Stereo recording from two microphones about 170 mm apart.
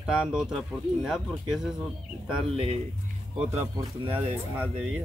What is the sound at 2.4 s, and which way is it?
Speech, 35° right (ahead or behind).